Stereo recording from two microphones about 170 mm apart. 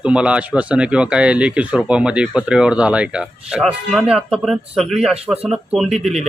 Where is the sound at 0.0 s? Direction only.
5° right (ahead or behind).